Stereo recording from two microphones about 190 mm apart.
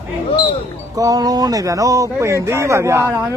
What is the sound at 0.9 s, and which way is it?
Speech, 20° right (ahead or behind).